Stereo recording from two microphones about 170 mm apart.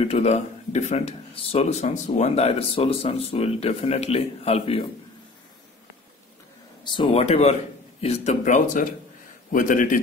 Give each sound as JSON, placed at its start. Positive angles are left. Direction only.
{"t": 0.0, "sound": "speech", "side_deg": 35}
{"t": 6.8, "sound": "speech", "side_deg": 25}